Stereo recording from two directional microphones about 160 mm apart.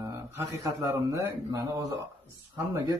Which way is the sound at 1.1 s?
20° right (ahead or behind).